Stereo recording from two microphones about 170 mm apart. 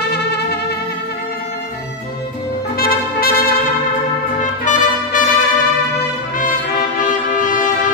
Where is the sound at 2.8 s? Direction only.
60° left (ahead or behind).